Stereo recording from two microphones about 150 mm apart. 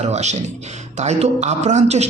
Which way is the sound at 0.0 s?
50° right (ahead or behind).